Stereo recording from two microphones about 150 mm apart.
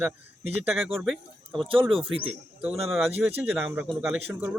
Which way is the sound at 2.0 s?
35° right (ahead or behind).